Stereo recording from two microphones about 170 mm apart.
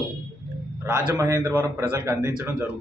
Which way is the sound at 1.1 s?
20° right (ahead or behind).